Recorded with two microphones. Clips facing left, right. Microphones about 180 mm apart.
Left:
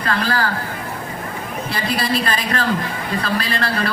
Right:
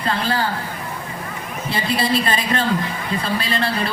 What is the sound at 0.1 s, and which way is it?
Speech, 25° right (ahead or behind).